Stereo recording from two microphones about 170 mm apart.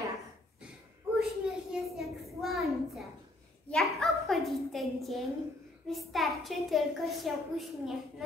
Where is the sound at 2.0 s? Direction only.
Centre (ahead or behind).